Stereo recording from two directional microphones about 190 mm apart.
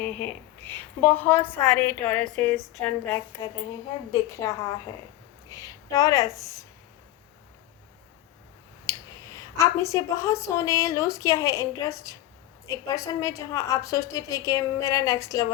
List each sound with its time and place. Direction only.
0.0 s a woman's voice: 10° left (ahead or behind)
8.9 s a woman's voice: 15° left (ahead or behind)